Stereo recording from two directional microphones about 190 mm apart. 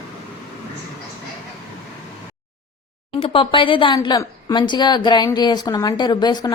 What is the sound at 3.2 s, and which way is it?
A woman's voice, 25° left (ahead or behind).